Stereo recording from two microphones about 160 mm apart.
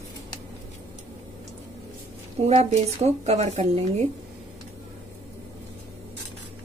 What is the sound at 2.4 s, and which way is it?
Speech, 40° right (ahead or behind).